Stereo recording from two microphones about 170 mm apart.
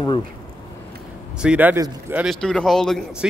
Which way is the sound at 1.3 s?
10° right (ahead or behind).